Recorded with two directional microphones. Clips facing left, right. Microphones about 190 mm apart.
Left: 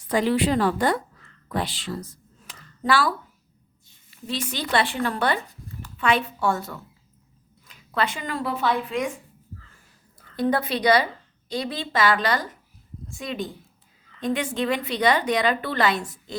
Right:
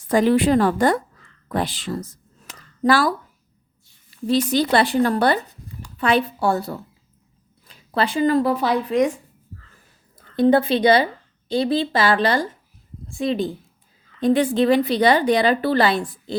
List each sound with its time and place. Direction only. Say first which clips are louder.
0.1 s a woman's voice: right 5 dB; 45° right (ahead or behind)
1.5 s a sound: right 4 dB; 45° right (ahead or behind)
4.3 s a woman's voice: right 9 dB; 40° right (ahead or behind)
10.2 s a woman's voice: right 7 dB; 25° right (ahead or behind)